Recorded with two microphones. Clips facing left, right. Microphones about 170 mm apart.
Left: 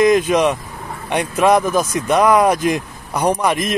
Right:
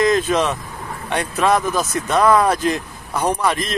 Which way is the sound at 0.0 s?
15° left (ahead or behind).